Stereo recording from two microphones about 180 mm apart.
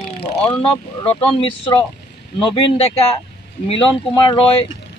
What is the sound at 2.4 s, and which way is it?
Speech, 30° left (ahead or behind).